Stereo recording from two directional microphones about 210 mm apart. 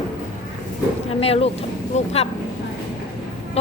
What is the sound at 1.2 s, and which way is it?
Speech, 30° left (ahead or behind).